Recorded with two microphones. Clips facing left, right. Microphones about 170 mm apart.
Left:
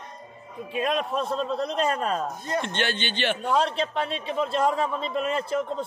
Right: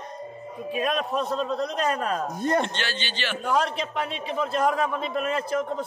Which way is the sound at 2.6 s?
55° left (ahead or behind).